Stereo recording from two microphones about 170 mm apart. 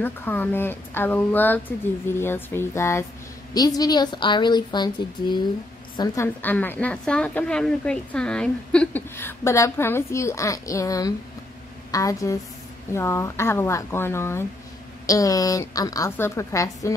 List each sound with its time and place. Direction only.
0.0 s a woman's voice: 10° left (ahead or behind)
5.9 s a woman's voice: 15° left (ahead or behind)